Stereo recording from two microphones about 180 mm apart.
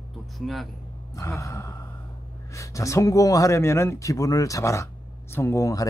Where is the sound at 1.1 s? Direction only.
15° left (ahead or behind).